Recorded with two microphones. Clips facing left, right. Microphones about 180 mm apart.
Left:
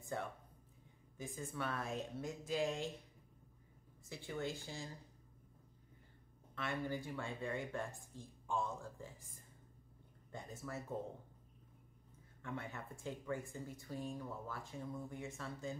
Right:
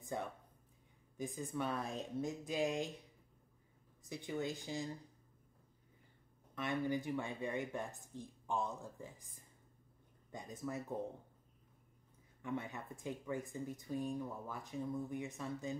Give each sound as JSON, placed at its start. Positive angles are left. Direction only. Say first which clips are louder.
{"t": 0.0, "sound": "speech", "louder": "right 1 dB", "side_deg": -15}
{"t": 4.0, "sound": "speech", "louder": "right 2 dB", "side_deg": -15}
{"t": 6.5, "sound": "speech", "louder": "right 4 dB", "side_deg": -15}
{"t": 10.3, "sound": "speech", "louder": "right 3 dB", "side_deg": -15}
{"t": 12.4, "sound": "speech", "louder": "right 4 dB", "side_deg": -15}